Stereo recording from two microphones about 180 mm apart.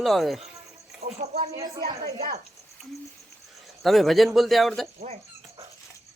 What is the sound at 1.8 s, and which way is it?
Speech, 55° right (ahead or behind).